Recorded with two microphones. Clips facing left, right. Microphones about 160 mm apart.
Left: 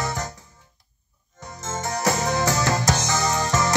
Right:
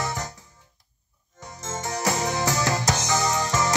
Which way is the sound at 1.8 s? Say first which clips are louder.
Left 2 dB; 45° left (ahead or behind).